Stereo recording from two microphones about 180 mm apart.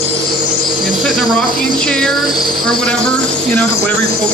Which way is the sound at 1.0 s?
Centre (ahead or behind).